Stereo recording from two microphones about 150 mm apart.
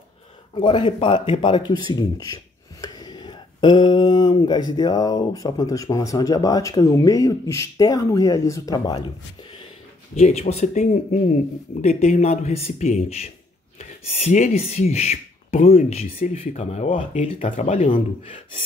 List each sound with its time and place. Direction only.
0.6 s a man's voice: 30° left (ahead or behind)
10.1 s speech: 45° left (ahead or behind)
17.9 s a man's voice: 35° left (ahead or behind)